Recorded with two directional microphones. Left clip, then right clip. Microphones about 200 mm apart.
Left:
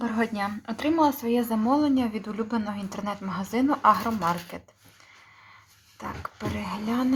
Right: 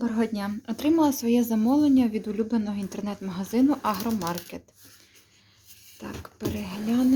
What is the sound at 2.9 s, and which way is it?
Speech, 15° right (ahead or behind).